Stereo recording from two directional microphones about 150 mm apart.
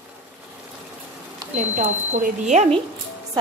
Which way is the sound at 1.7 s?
55° right (ahead or behind).